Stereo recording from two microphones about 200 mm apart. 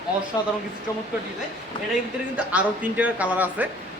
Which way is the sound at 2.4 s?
5° right (ahead or behind).